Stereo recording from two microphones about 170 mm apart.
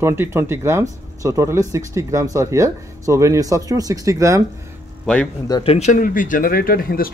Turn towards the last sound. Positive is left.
turn(degrees=60)  # may be behind; listen again after turning